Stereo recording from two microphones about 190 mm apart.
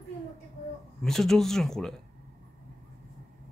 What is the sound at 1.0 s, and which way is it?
Speech, centre (ahead or behind).